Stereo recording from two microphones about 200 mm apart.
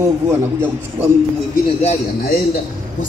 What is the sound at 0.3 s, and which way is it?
Speech, 10° right (ahead or behind).